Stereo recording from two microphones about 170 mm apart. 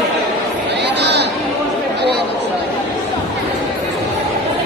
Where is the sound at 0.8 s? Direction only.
85° right.